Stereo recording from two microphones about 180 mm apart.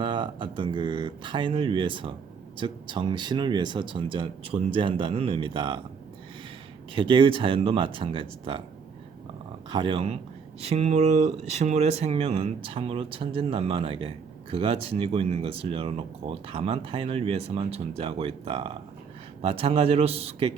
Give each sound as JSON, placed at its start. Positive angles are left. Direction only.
{"t": 0.0, "sound": "speech", "side_deg": -25}
{"t": 6.9, "sound": "speech", "side_deg": -30}
{"t": 9.6, "sound": "speech", "side_deg": -30}